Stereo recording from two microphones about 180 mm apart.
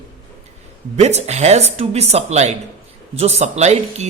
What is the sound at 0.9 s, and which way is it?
A woman's voice, 35° right (ahead or behind).